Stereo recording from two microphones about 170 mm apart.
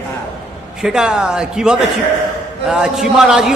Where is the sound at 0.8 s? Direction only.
5° right (ahead or behind).